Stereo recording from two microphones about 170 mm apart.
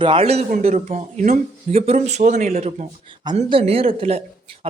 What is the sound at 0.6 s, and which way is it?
A woman's voice, 50° right (ahead or behind).